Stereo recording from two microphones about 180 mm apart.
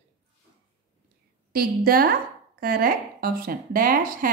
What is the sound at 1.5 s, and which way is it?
A woman's voice, 55° right (ahead or behind).